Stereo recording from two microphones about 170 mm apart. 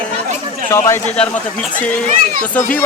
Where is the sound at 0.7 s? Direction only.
15° left (ahead or behind).